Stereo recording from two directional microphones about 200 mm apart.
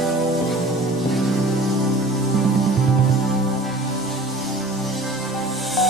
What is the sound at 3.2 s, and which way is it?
Music, centre (ahead or behind).